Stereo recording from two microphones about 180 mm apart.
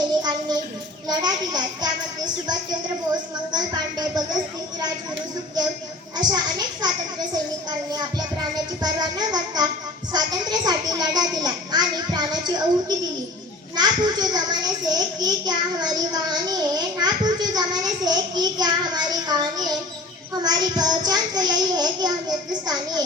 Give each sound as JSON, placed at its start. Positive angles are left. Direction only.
{"t": 0.2, "sound": "a sound", "side_deg": -25}
{"t": 1.0, "sound": "a child's voice", "side_deg": -25}
{"t": 6.1, "sound": "a child's voice", "side_deg": -20}
{"t": 7.9, "sound": "music", "side_deg": -20}
{"t": 10.1, "sound": "a child's voice", "side_deg": -20}